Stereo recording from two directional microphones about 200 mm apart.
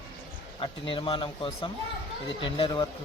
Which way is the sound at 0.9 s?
25° left (ahead or behind).